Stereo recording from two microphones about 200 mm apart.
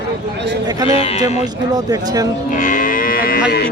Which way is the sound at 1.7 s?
20° right (ahead or behind).